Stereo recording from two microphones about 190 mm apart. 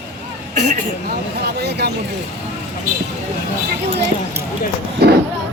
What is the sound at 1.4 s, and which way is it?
Speech, 60° right (ahead or behind).